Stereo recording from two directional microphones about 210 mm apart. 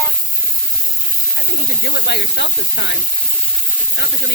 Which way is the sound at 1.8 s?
55° left (ahead or behind).